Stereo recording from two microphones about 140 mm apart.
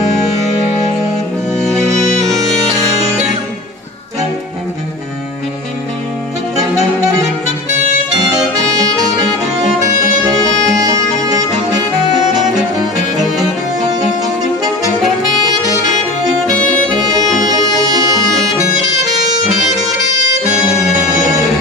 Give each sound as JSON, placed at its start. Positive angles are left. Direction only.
{"t": 2.2, "sound": "bagpipes", "side_deg": 0}
{"t": 10.2, "sound": "music", "side_deg": -25}
{"t": 16.9, "sound": "music", "side_deg": -30}